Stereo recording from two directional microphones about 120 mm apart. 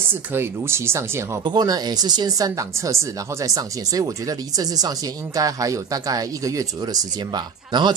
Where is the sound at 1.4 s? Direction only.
35° right (ahead or behind).